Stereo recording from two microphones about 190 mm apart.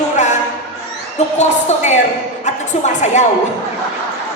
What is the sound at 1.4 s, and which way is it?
A woman's voice, 35° left (ahead or behind).